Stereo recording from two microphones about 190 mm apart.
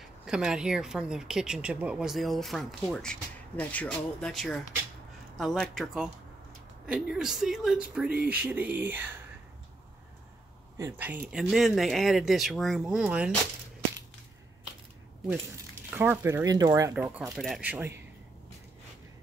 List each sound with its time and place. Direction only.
0.2 s speech: 5° right (ahead or behind)
10.8 s speech: 10° right (ahead or behind)
15.9 s speech: 10° right (ahead or behind)
16.9 s speech: 10° right (ahead or behind)